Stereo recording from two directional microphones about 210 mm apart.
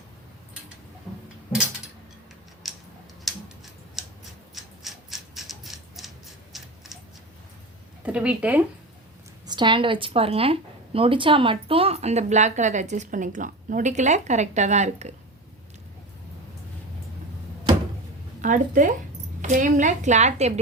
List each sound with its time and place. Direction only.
2.6 s tick-tock: centre (ahead or behind)
3.3 s a sound: centre (ahead or behind)
4.5 s mechanisms: centre (ahead or behind)
6.5 s a sound: centre (ahead or behind)
8.0 s speech: 5° right (ahead or behind)
9.5 s a woman's voice: 20° right (ahead or behind)
18.4 s a woman's voice: 40° right (ahead or behind)